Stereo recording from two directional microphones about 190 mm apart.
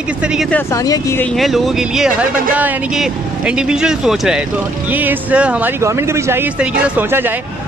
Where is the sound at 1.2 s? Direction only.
Centre (ahead or behind).